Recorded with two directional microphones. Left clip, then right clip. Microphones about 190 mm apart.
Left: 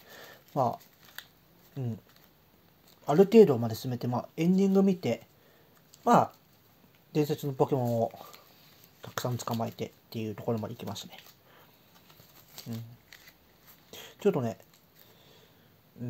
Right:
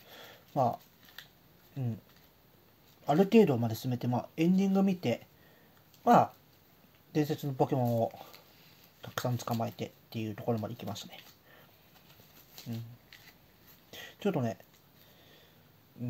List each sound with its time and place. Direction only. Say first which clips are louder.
0.5 s speech: left 1 dB; 25° left (ahead or behind)
3.1 s speech: left 5 dB; 25° left (ahead or behind)
13.8 s a sound: left 6 dB; 25° left (ahead or behind)